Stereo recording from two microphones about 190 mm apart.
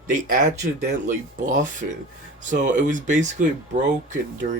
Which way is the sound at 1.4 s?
45° right (ahead or behind).